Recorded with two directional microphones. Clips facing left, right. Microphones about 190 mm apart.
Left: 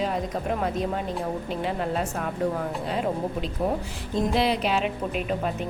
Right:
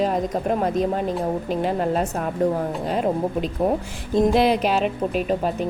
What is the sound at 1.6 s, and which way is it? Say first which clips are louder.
Speech: right 5 dB; 45° right (ahead or behind).